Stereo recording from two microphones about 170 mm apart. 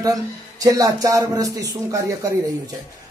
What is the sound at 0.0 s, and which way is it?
A man's voice, 20° right (ahead or behind).